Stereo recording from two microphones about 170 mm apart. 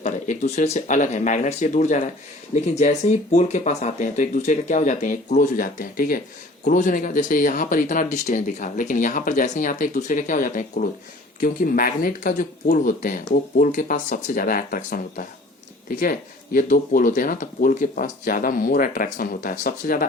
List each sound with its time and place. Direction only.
0.0 s speech: 45° left (ahead or behind)